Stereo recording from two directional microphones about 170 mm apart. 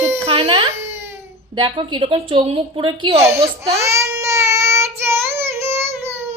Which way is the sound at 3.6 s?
15° right (ahead or behind).